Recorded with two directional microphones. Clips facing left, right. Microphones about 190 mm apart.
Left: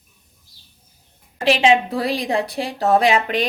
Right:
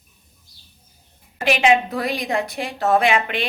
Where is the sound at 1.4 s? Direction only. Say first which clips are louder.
Left 2 dB; 30° left (ahead or behind).